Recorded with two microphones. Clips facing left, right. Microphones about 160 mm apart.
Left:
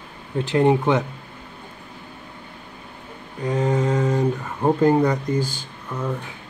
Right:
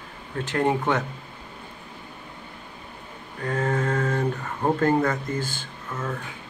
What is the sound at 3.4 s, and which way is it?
Speech, 15° left (ahead or behind).